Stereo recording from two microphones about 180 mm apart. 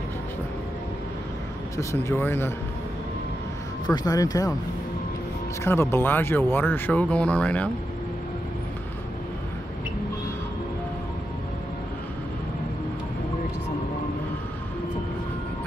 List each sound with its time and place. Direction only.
1.8 s speech: 15° left (ahead or behind)
3.8 s speech: 20° left (ahead or behind)
5.6 s speech: 15° left (ahead or behind)